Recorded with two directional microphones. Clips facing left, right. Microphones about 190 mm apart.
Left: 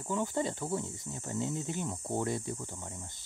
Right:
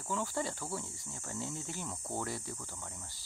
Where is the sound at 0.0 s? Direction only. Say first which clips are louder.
Left 4 dB; 20° left (ahead or behind).